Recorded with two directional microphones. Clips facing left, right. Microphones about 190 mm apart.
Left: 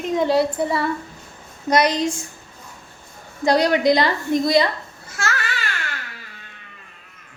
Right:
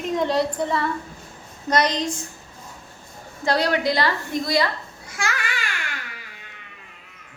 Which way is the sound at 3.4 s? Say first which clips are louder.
Left 5 dB; 15° left (ahead or behind).